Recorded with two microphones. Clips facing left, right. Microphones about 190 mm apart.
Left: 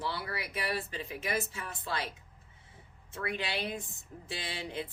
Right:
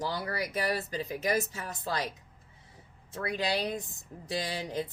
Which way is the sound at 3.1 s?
40° right (ahead or behind).